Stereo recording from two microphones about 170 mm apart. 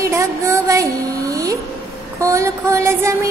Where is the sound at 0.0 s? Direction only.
15° right (ahead or behind).